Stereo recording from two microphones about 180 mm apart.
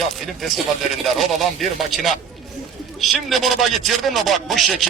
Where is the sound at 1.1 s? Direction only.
Centre (ahead or behind).